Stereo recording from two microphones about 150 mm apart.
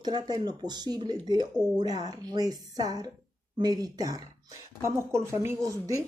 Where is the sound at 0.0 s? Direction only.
25° right (ahead or behind).